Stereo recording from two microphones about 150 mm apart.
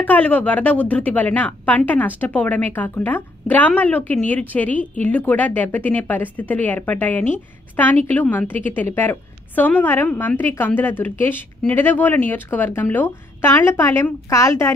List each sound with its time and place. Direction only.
0.0 s a woman's voice: 10° left (ahead or behind)